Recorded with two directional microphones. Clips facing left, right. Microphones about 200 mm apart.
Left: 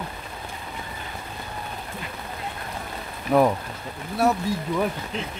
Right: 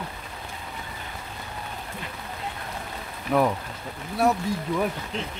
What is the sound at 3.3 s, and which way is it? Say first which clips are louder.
Speech: left 3 dB; 25° left (ahead or behind).